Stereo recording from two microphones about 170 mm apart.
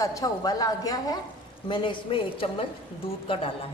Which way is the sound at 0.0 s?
20° left (ahead or behind).